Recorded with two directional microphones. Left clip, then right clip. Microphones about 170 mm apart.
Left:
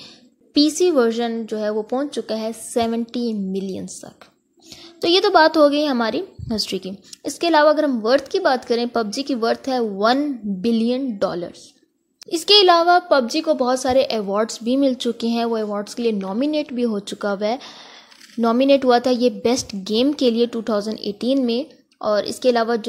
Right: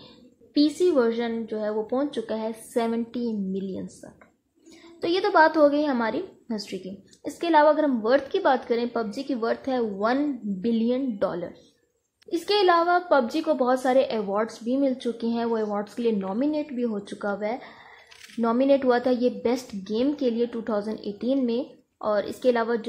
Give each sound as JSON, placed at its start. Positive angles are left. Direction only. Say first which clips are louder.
{"t": 0.6, "sound": "a child's voice", "louder": "left 5 dB", "side_deg": 25}